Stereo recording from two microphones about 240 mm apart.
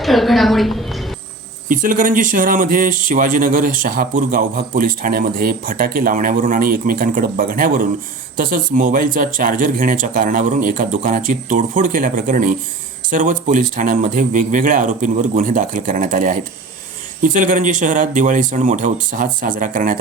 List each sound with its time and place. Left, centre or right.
0.0 s a woman's voice: centre
1.6 s speech: right